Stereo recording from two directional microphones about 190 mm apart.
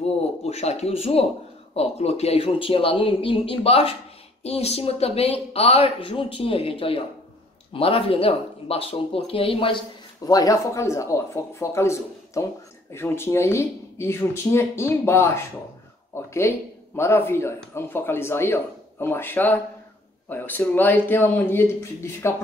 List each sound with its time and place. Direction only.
0.0 s speech: 35° left (ahead or behind)
10.2 s speech: 20° left (ahead or behind)